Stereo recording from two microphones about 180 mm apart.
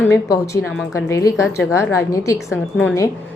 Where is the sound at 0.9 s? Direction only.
15° left (ahead or behind).